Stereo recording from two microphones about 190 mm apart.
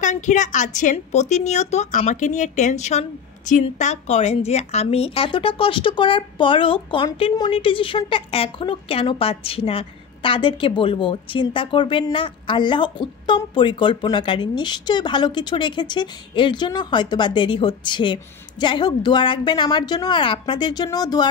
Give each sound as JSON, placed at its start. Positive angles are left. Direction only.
{"t": 0.0, "sound": "a woman's voice", "side_deg": 40}